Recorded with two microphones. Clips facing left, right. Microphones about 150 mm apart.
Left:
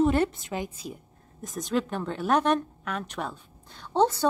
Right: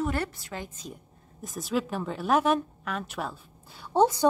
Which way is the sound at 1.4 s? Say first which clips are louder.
Left 1 dB; centre (ahead or behind).